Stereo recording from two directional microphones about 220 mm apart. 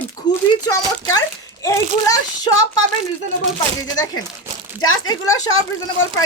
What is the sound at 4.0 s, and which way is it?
Speech, 15° left (ahead or behind).